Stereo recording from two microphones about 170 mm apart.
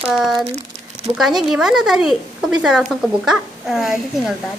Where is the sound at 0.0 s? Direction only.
5° right (ahead or behind).